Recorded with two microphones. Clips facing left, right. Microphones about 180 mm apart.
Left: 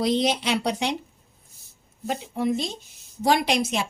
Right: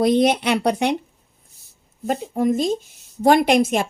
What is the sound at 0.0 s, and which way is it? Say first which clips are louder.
Speech: right 6 dB; 55° right (ahead or behind).